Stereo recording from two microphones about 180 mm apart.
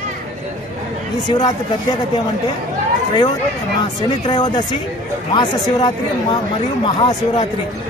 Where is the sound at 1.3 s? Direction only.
25° left (ahead or behind).